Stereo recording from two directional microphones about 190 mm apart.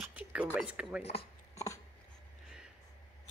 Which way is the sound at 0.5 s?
5° right (ahead or behind).